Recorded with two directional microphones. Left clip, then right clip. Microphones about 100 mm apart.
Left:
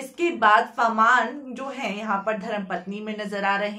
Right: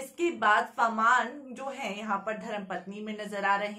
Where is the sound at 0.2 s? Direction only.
25° left (ahead or behind).